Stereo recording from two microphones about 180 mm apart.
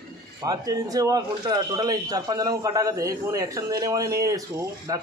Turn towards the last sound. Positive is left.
turn(degrees=-20)  # may be behind; listen again after turning